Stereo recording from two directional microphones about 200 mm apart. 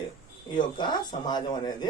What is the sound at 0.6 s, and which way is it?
A man's voice, 20° left (ahead or behind).